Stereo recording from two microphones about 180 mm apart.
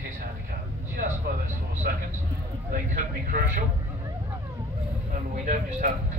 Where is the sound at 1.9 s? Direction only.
55° right (ahead or behind).